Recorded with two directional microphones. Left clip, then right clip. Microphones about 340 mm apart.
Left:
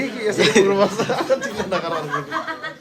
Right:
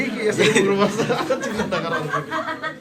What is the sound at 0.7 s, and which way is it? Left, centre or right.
Speech, left.